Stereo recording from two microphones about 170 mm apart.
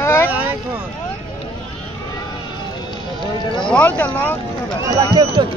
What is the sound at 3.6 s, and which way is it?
Vehicle, 5° left (ahead or behind).